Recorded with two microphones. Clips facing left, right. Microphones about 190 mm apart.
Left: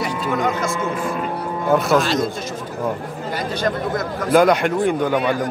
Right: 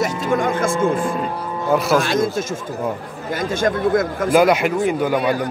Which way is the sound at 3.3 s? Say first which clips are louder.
Right 3 dB; 50° right (ahead or behind).